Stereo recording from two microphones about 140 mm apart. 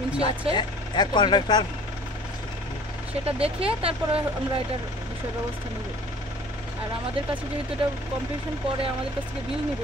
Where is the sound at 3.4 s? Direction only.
45° right (ahead or behind).